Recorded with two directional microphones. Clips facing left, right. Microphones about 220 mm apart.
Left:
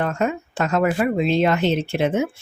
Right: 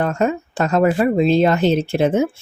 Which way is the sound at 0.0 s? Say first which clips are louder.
Right 3 dB; 35° right (ahead or behind).